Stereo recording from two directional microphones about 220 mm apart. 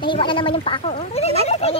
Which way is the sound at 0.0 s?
20° left (ahead or behind).